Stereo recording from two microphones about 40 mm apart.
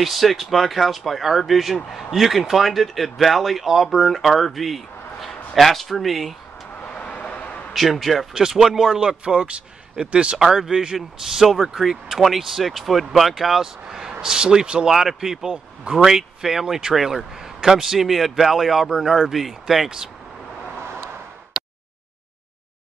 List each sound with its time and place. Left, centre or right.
0.0 s speech: centre
6.8 s vehicle: left
7.7 s speech: centre
8.4 s a man's voice: centre
10.4 s speech: centre
15.5 s a man's voice: right
16.0 s speech: centre